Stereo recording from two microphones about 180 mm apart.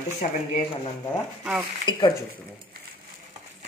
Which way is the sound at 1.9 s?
25° left (ahead or behind).